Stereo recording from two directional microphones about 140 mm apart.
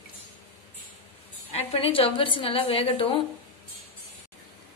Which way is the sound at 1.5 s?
40° left (ahead or behind).